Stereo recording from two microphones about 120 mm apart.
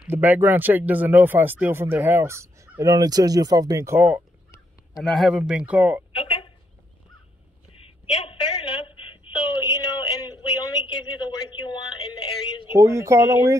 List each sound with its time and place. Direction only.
0.0 s speech: 15° right (ahead or behind)
5.0 s speech: centre (ahead or behind)
5.3 s speech: 10° right (ahead or behind)
6.1 s a sound: 45° left (ahead or behind)
7.8 s a sound: 50° left (ahead or behind)
12.6 s speech: 25° right (ahead or behind)